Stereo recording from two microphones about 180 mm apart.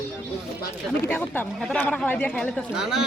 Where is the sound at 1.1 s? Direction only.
10° left (ahead or behind).